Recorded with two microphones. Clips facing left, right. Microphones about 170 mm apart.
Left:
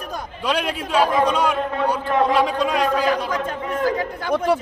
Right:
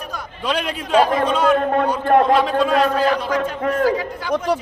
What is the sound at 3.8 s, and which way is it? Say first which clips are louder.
Speech: right 2 dB; 50° left (ahead or behind).